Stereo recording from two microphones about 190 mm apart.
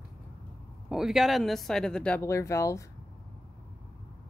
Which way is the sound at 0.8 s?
Centre (ahead or behind).